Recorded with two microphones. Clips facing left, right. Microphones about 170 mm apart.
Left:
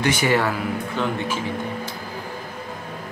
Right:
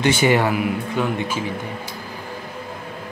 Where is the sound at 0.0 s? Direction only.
25° right (ahead or behind).